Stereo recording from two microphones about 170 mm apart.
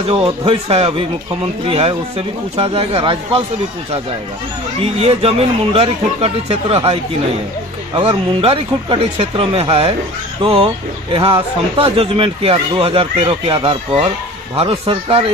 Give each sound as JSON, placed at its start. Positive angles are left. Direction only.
{"t": 0.1, "sound": "speech", "side_deg": -30}
{"t": 4.9, "sound": "speech", "side_deg": -35}